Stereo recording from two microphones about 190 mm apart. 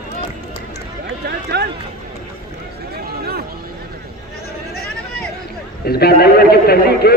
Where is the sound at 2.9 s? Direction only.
55° right (ahead or behind).